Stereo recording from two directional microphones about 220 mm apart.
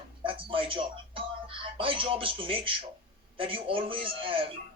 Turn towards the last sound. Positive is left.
turn(degrees=-25)  # may be behind; listen again after turning